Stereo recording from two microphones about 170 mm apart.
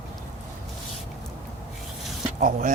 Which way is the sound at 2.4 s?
50° right (ahead or behind).